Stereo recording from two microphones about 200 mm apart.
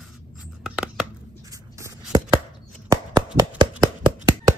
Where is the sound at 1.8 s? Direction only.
20° right (ahead or behind).